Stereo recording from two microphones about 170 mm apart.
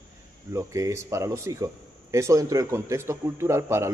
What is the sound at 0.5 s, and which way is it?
A man's voice, 20° right (ahead or behind).